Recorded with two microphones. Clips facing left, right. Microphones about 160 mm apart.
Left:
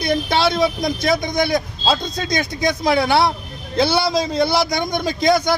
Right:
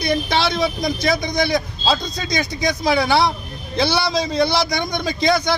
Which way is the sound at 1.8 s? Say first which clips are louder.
Left 1 dB; centre (ahead or behind).